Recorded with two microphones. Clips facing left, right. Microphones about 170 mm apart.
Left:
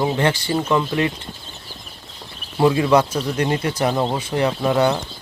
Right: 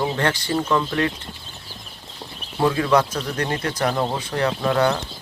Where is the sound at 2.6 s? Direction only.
15° left (ahead or behind).